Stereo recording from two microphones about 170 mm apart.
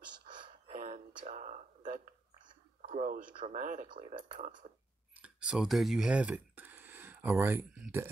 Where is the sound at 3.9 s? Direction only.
30° right (ahead or behind).